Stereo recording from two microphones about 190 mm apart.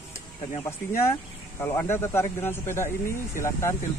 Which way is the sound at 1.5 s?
10° left (ahead or behind).